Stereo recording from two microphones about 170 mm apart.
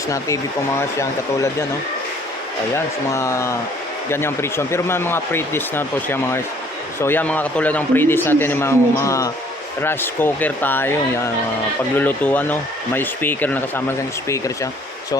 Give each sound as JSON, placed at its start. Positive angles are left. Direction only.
{"t": 0.8, "sound": "speech", "side_deg": 15}
{"t": 2.7, "sound": "speech", "side_deg": 15}